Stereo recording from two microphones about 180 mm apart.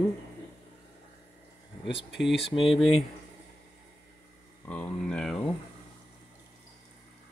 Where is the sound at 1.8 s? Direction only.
75° left (ahead or behind).